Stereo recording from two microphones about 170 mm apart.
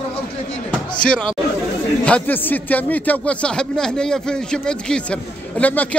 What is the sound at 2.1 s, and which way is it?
Speech, 10° left (ahead or behind).